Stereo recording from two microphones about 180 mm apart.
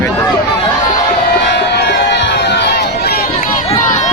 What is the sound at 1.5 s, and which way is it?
Crowd, 70° left (ahead or behind).